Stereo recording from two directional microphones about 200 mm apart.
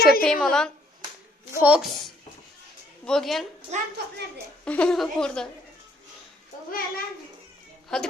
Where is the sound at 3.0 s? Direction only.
Centre (ahead or behind).